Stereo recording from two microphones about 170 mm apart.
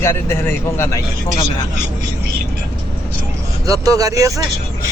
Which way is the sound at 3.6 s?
20° right (ahead or behind).